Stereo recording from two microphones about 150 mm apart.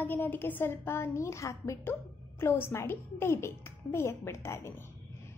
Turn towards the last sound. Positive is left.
turn(degrees=15)  # may be behind; listen again after turning